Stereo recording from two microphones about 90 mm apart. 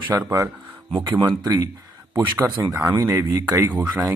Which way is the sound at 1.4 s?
40° right (ahead or behind).